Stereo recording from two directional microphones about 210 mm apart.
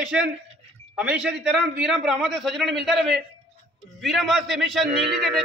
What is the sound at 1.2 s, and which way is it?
Speech, 55° right (ahead or behind).